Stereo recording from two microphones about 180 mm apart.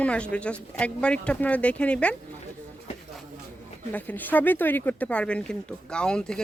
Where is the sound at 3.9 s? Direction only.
10° left (ahead or behind).